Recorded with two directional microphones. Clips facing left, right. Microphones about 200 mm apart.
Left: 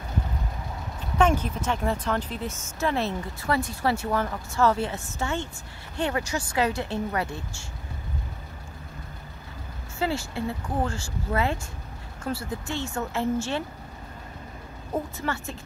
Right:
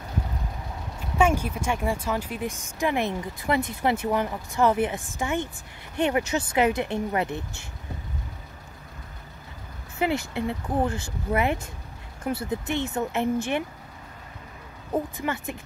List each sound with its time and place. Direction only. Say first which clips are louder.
1.1 s speech: even; 10° right (ahead or behind)
9.9 s speech: right 2 dB; 20° right (ahead or behind)
15.1 s speech: right 1 dB; 15° right (ahead or behind)